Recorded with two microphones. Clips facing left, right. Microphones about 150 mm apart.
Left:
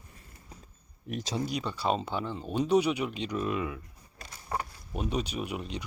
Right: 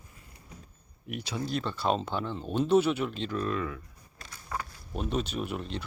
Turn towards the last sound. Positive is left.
turn(degrees=10)  # may be behind; listen again after turning